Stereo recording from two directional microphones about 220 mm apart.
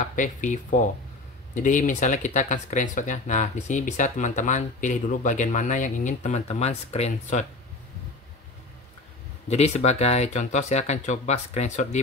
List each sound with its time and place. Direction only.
0.0 s speech: 35° left (ahead or behind)
9.5 s speech: 30° left (ahead or behind)